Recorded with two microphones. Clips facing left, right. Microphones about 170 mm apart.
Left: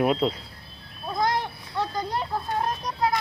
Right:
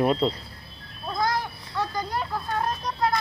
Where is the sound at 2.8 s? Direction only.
15° left (ahead or behind).